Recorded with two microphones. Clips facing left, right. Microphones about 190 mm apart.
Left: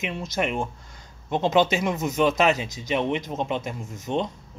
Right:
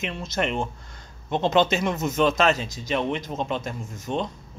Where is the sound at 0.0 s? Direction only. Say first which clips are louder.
Even; 15° left (ahead or behind).